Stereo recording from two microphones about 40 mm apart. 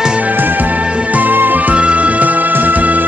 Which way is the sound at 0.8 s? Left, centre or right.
Right.